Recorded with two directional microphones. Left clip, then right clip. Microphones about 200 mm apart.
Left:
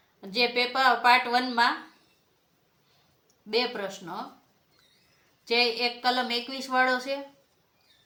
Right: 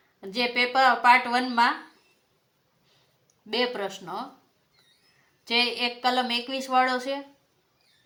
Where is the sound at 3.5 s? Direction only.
40° right (ahead or behind).